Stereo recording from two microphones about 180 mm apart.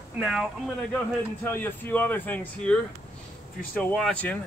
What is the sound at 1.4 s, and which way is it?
Speech, 10° left (ahead or behind).